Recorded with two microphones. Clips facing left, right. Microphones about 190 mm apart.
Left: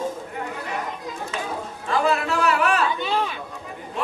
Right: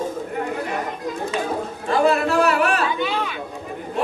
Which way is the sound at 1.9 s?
45° right (ahead or behind).